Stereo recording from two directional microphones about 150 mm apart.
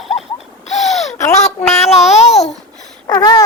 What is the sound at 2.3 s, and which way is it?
Speech, centre (ahead or behind).